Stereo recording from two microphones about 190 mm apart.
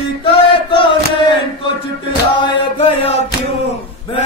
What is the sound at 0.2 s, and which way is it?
Chant, 25° left (ahead or behind).